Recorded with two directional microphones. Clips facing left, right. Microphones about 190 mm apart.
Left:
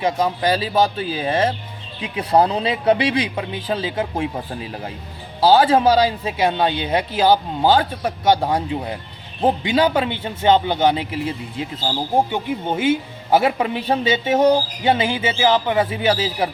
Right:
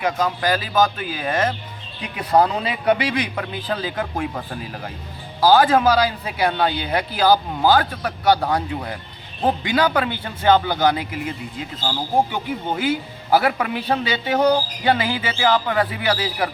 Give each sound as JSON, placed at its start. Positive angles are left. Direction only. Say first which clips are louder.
{"t": 0.0, "sound": "speech", "louder": "left 2 dB", "side_deg": 25}
{"t": 5.4, "sound": "speech", "louder": "left 1 dB", "side_deg": 25}